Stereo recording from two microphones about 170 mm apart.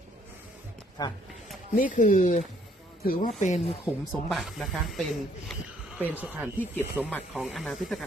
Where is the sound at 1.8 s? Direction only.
50° left (ahead or behind).